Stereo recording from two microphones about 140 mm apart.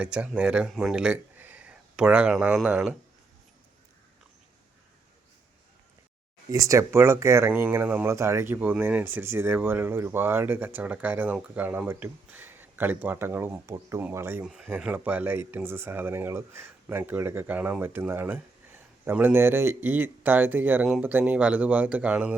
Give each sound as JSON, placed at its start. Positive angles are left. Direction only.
{"t": 0.0, "sound": "speech", "side_deg": -5}
{"t": 6.5, "sound": "speech", "side_deg": -25}